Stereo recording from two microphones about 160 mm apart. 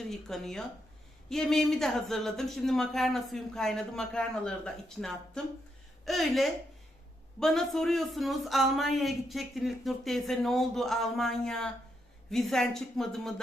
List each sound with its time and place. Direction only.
0.0 s speech: centre (ahead or behind)